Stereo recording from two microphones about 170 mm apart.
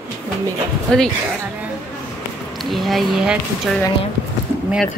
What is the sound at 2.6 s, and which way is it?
Speech, centre (ahead or behind).